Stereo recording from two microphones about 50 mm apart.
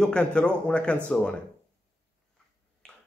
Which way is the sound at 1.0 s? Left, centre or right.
Left.